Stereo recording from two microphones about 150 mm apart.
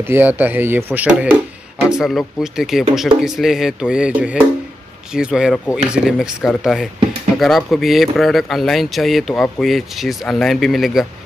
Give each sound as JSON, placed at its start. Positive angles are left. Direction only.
{"t": 0.0, "sound": "speech", "side_deg": -15}